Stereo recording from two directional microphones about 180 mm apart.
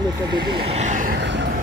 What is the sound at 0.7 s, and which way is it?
Vehicle, 40° right (ahead or behind).